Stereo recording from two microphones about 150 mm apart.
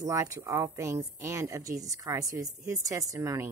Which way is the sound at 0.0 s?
20° right (ahead or behind).